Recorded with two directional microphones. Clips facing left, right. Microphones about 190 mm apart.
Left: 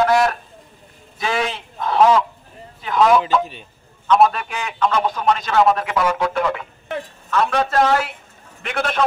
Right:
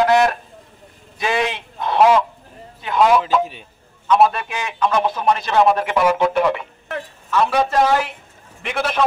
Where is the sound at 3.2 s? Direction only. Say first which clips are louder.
Right 1 dB; 10° right (ahead or behind).